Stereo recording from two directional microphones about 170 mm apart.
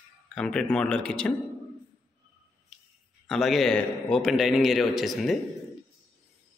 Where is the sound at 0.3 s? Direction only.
5° left (ahead or behind).